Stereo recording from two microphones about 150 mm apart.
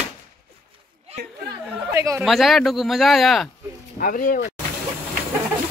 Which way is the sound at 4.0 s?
65° left (ahead or behind).